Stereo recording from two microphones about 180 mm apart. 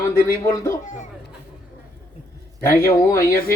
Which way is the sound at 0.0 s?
15° left (ahead or behind).